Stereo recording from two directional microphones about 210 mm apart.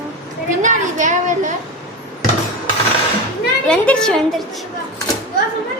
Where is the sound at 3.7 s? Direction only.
5° left (ahead or behind).